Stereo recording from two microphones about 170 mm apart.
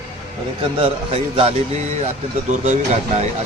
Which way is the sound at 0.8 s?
35° right (ahead or behind).